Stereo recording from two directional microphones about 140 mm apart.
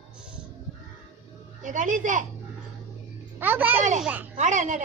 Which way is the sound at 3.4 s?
15° right (ahead or behind).